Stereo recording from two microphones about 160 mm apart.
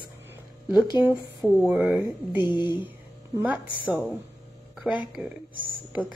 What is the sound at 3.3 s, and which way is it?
Speech, 10° right (ahead or behind).